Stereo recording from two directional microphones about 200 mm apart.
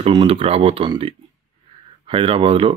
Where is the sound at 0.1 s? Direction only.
25° right (ahead or behind).